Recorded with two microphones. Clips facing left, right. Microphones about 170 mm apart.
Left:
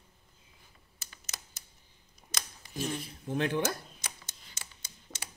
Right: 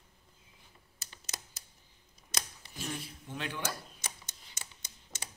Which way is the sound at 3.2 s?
50° left (ahead or behind).